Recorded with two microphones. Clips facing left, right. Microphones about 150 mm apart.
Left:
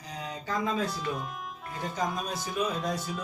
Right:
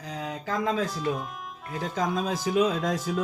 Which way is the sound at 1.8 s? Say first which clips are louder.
Right 4 dB; 90° right.